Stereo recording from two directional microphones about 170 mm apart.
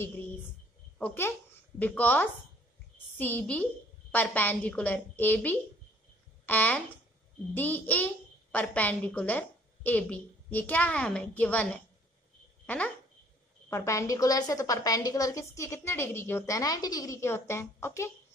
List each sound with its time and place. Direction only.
0.9 s a woman's voice: 10° left (ahead or behind)